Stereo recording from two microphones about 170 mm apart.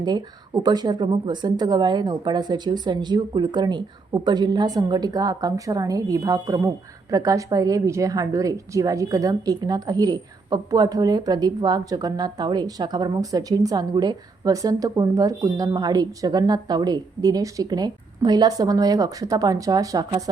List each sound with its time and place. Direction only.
0.0 s a woman's voice: 25° right (ahead or behind)